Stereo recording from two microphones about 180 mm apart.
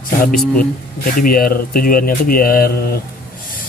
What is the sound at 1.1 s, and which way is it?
Speech, 55° left (ahead or behind).